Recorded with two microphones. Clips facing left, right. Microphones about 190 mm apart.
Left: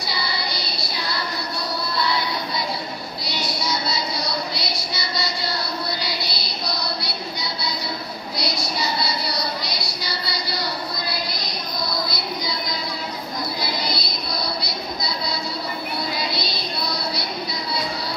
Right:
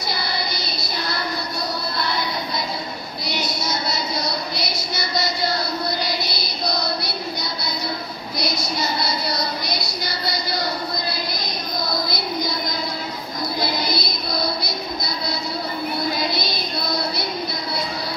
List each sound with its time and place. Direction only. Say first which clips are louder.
0.1 s child singing: right 1 dB; 50° right (ahead or behind)
2.0 s music: left 3 dB; 50° right (ahead or behind)
3.3 s a sound: right 1 dB; 45° right (ahead or behind)
6.0 s music: right 3 dB; 50° right (ahead or behind)
8.7 s a sound: right 1 dB; 50° right (ahead or behind)
13.6 s music: right 3 dB; 50° right (ahead or behind)